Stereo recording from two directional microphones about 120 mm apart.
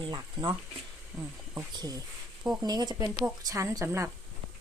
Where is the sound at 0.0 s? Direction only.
45° right (ahead or behind).